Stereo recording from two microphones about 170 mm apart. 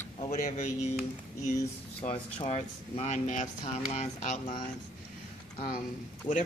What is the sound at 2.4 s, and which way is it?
Speech, 40° left (ahead or behind).